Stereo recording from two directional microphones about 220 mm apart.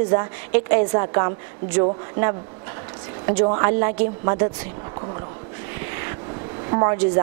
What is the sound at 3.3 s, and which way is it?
A woman's voice, 25° right (ahead or behind).